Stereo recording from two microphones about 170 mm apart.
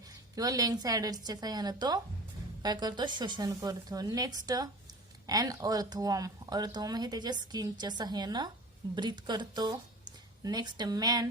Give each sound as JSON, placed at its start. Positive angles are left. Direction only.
{"t": 0.3, "sound": "speech", "side_deg": -20}